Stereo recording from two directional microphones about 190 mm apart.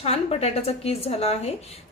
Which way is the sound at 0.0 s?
35° left (ahead or behind).